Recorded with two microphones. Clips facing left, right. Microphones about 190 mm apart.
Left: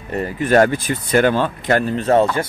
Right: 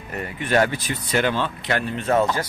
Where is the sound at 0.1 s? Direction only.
40° left (ahead or behind).